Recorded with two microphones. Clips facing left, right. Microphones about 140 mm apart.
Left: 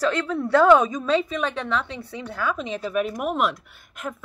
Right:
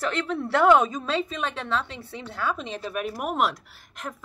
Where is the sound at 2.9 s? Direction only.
40° right (ahead or behind).